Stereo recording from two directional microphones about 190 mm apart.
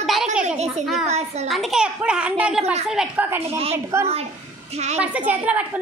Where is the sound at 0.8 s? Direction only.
Centre (ahead or behind).